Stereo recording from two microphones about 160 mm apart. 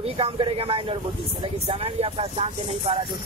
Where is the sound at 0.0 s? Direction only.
35° right (ahead or behind).